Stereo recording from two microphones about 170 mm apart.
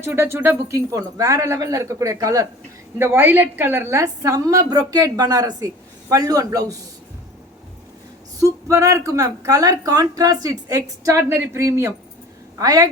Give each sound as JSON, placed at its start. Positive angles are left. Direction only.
{"t": 0.0, "sound": "speech", "side_deg": -15}
{"t": 8.4, "sound": "speech", "side_deg": -20}